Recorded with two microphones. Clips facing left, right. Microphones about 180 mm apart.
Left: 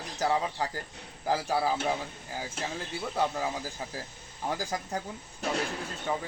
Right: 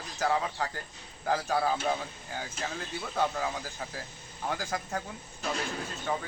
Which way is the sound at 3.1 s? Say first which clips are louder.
Even; 10° left (ahead or behind).